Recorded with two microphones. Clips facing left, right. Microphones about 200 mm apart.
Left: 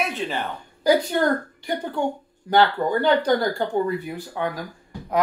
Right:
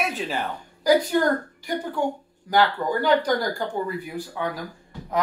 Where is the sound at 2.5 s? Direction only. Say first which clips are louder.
Left 2 dB; 25° left (ahead or behind).